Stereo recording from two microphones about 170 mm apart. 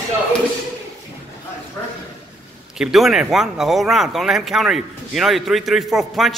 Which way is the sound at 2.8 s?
Centre (ahead or behind).